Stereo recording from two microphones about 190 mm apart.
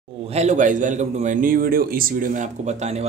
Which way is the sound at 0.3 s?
35° right (ahead or behind).